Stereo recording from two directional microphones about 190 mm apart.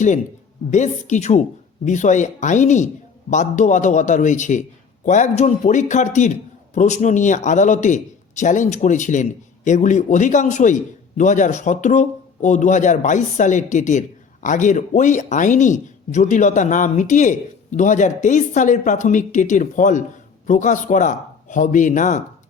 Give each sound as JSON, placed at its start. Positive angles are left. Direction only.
{"t": 0.7, "sound": "speech", "side_deg": 40}